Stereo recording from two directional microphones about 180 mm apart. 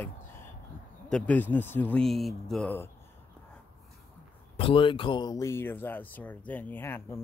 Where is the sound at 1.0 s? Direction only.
5° left (ahead or behind).